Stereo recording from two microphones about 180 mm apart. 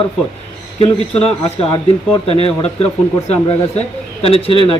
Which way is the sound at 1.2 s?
35° left (ahead or behind).